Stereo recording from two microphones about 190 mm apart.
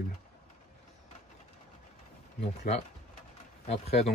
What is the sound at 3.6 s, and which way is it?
Speech, 35° left (ahead or behind).